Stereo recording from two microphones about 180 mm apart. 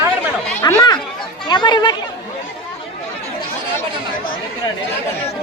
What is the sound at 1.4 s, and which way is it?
Chatter, 25° left (ahead or behind).